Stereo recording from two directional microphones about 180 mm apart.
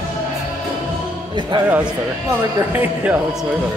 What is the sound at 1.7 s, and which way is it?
Speech, 10° right (ahead or behind).